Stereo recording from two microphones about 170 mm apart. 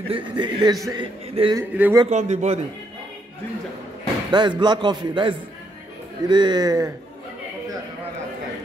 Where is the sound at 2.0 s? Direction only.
40° right (ahead or behind).